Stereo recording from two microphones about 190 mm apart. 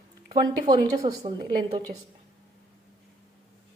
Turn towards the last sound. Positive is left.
turn(degrees=-25)  # may be behind; listen again after turning